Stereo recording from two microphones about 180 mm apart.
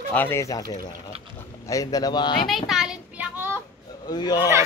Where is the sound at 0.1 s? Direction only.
10° left (ahead or behind).